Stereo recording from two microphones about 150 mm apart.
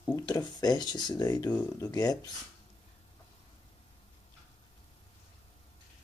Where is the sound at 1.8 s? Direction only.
25° left (ahead or behind).